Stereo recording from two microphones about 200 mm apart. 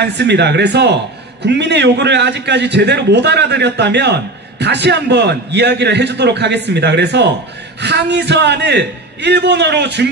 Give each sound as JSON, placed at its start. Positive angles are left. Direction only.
{"t": 0.0, "sound": "a man's voice", "side_deg": -60}